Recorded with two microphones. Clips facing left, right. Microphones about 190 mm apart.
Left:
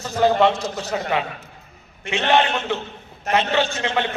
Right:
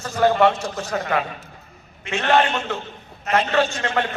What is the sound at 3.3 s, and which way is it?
Speech, 15° left (ahead or behind).